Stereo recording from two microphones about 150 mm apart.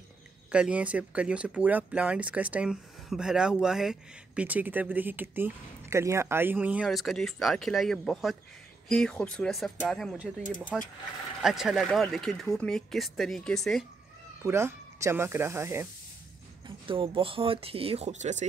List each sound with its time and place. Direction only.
0.5 s speech: 5° right (ahead or behind)
14.4 s speech: 20° right (ahead or behind)
16.6 s speech: 35° right (ahead or behind); by 18.5 s 50° right (ahead or behind)